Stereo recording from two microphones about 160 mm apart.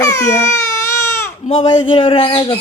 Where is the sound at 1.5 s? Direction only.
35° left (ahead or behind).